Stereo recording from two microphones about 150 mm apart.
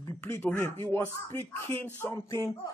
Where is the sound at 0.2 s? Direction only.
15° left (ahead or behind).